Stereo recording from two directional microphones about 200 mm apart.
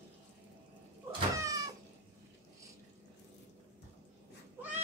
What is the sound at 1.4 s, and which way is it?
Cat, 15° right (ahead or behind).